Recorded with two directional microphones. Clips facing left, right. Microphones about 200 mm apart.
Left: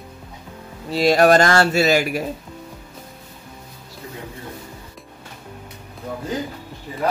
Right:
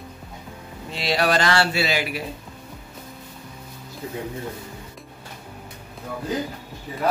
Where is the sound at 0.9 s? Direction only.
45° left (ahead or behind).